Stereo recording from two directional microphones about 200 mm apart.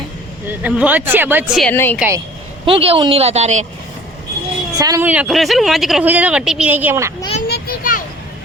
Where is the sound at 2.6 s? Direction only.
25° right (ahead or behind).